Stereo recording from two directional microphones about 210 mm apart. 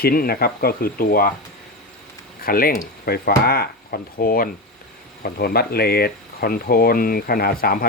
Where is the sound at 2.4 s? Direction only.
45° left (ahead or behind).